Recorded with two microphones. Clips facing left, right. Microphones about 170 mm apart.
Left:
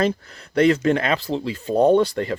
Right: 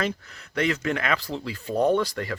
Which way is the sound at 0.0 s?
35° left (ahead or behind).